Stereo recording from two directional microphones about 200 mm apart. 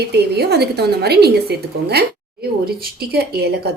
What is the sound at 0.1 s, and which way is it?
A woman's voice, 55° right (ahead or behind).